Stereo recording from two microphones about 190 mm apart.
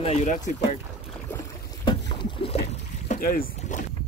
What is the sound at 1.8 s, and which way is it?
Boat, 25° left (ahead or behind).